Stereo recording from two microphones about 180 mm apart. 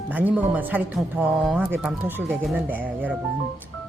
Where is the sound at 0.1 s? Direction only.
10° right (ahead or behind).